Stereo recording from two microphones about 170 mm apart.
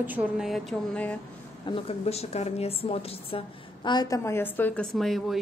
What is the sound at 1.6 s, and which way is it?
A woman's voice, 35° left (ahead or behind).